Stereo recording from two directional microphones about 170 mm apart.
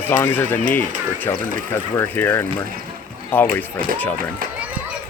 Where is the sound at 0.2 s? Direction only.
10° left (ahead or behind).